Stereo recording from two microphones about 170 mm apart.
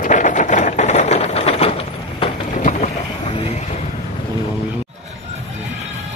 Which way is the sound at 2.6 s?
50° left (ahead or behind).